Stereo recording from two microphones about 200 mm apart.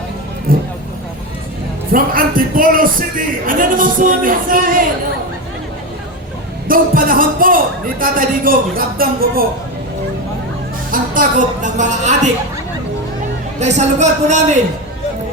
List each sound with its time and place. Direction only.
0.5 s vehicle: 45° right (ahead or behind)
1.9 s a man's voice: 45° right (ahead or behind)
6.7 s a man's voice: 45° right (ahead or behind)
10.9 s speech: 40° right (ahead or behind)
13.6 s speech: 35° right (ahead or behind)